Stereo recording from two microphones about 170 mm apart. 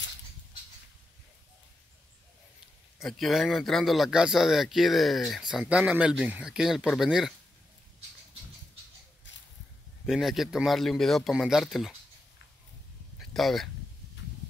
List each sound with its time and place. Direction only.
3.0 s speech: centre (ahead or behind)
9.3 s a sound: 90° left
10.0 s speech: 5° right (ahead or behind)
13.3 s speech: centre (ahead or behind)